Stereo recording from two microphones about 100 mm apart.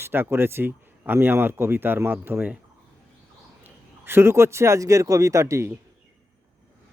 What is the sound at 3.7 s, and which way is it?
Speech, 25° right (ahead or behind).